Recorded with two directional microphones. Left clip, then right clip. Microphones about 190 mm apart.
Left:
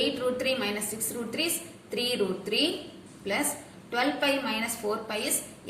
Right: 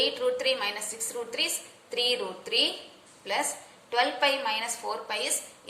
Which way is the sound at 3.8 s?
20° right (ahead or behind).